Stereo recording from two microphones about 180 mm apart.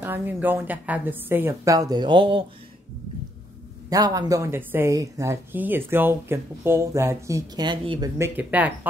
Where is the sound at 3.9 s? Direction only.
20° right (ahead or behind).